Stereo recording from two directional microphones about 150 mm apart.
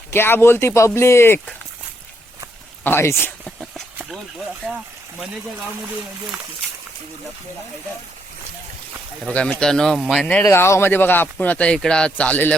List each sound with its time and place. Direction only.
0.1 s speech: 15° left (ahead or behind)
2.8 s speech: 15° left (ahead or behind)
3.4 s a sound: centre (ahead or behind)
9.2 s speech: 10° left (ahead or behind)
10.4 s speech: 20° left (ahead or behind)